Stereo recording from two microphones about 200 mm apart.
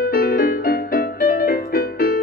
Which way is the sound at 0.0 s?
45° left (ahead or behind).